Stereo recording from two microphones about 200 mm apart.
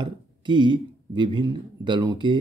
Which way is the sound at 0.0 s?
25° right (ahead or behind).